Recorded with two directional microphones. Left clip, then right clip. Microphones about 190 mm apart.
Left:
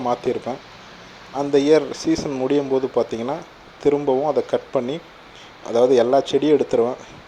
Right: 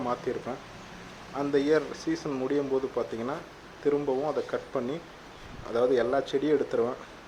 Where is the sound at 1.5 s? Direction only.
25° left (ahead or behind).